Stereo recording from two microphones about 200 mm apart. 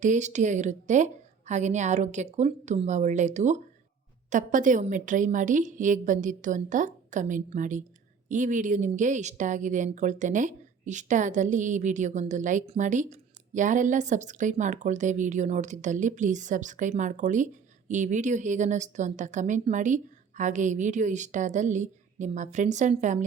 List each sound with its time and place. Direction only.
0.0 s a woman's voice: 35° right (ahead or behind)